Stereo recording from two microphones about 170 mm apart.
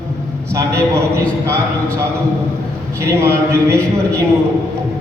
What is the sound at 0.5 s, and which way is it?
Speech, 15° right (ahead or behind).